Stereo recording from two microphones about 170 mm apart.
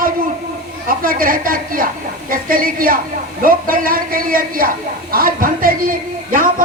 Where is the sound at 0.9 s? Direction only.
55° right (ahead or behind).